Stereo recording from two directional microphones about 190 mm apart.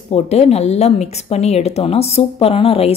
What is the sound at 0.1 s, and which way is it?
Speech, 35° left (ahead or behind).